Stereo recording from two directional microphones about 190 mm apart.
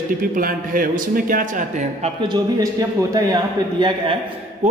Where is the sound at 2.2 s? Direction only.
20° right (ahead or behind).